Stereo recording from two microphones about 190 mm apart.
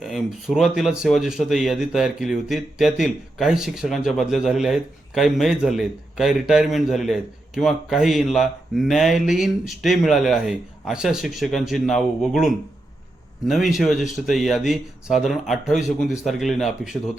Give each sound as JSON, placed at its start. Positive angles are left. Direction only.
{"t": 0.0, "sound": "a man's voice", "side_deg": 0}
{"t": 13.7, "sound": "a man's voice", "side_deg": 0}